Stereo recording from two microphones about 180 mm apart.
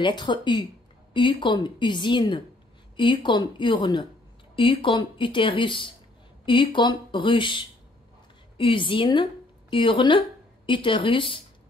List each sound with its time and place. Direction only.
0.0 s speech: 25° left (ahead or behind)